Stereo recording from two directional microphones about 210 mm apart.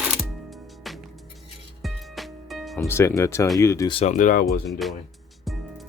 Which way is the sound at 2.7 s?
10° left (ahead or behind).